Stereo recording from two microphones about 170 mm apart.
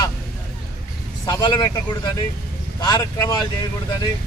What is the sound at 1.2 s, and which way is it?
Speech, 25° left (ahead or behind).